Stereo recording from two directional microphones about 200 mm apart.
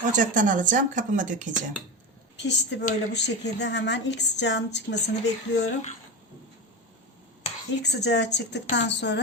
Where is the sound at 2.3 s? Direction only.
60° left (ahead or behind).